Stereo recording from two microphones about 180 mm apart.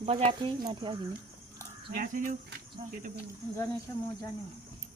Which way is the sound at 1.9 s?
50° right (ahead or behind).